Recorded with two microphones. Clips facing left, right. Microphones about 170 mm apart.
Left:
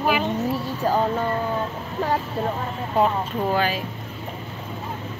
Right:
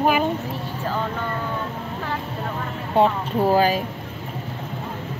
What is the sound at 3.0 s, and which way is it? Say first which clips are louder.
Speech: right 3 dB; 35° right (ahead or behind).